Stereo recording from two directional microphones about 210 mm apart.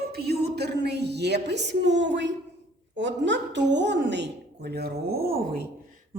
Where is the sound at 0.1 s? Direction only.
50° right (ahead or behind).